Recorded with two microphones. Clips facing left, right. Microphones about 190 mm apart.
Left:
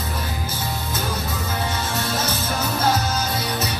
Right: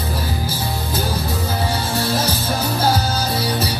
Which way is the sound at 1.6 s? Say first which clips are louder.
Right 4 dB; 30° right (ahead or behind).